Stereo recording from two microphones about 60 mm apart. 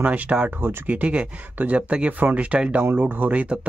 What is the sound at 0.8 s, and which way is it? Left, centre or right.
Speech, right.